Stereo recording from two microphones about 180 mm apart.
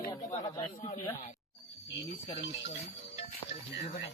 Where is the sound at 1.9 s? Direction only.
25° left (ahead or behind).